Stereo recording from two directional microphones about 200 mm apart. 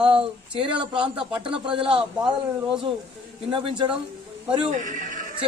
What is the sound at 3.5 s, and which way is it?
Speech, 25° right (ahead or behind).